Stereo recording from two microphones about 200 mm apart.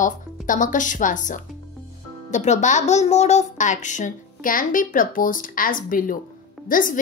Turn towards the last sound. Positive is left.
turn(degrees=40)  # may be behind; listen again after turning